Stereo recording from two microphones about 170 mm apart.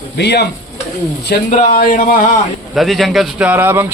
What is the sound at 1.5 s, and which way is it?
Speech, 45° left (ahead or behind).